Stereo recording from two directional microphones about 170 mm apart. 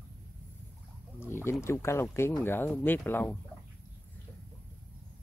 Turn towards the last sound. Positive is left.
turn(degrees=10)  # may be behind; listen again after turning